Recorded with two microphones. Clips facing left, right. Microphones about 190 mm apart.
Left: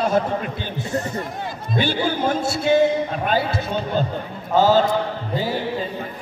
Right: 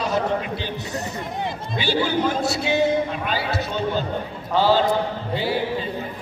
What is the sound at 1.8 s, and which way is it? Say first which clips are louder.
A man's voice: even; 50° left (ahead or behind).